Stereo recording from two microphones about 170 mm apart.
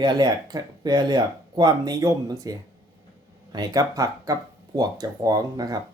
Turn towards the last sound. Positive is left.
turn(degrees=-20)  # may be behind; listen again after turning